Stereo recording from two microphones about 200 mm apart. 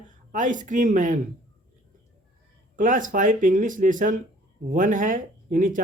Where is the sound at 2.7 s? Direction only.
40° right (ahead or behind).